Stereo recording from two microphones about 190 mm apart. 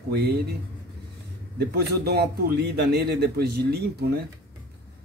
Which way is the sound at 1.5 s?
55° right (ahead or behind).